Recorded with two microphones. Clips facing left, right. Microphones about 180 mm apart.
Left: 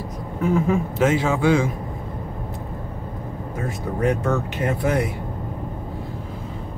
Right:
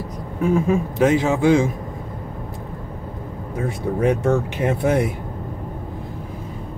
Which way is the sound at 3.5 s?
25° right (ahead or behind).